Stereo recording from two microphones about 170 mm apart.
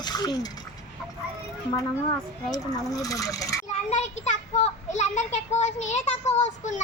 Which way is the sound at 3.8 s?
40° left (ahead or behind).